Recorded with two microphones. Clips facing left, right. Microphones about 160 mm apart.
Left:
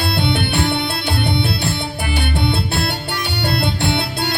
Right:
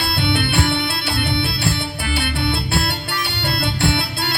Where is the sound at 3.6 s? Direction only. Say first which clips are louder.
Left 1 dB; 20° left (ahead or behind).